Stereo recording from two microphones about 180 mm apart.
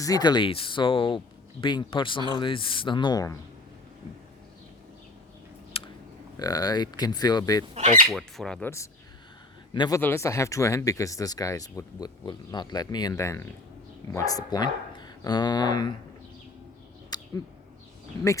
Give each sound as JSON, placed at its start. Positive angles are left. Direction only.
{"t": 0.0, "sound": "speech", "side_deg": 20}
{"t": 5.7, "sound": "a sound", "side_deg": 30}
{"t": 6.4, "sound": "speech", "side_deg": 20}
{"t": 7.7, "sound": "speech", "side_deg": -40}
{"t": 8.1, "sound": "speech", "side_deg": 0}
{"t": 9.7, "sound": "speech", "side_deg": 25}
{"t": 17.1, "sound": "bird", "side_deg": 20}